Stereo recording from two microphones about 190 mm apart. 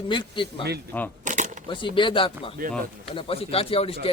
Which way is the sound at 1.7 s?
25° left (ahead or behind).